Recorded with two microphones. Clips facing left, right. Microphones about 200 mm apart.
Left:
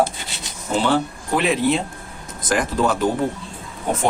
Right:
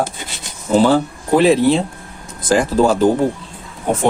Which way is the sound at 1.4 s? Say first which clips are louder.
Right 7 dB; 30° right (ahead or behind).